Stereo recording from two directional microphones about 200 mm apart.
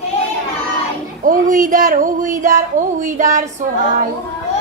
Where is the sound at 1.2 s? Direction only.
45° right (ahead or behind).